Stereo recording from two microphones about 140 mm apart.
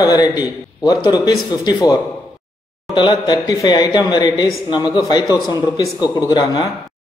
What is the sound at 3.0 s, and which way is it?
Speech, 30° left (ahead or behind).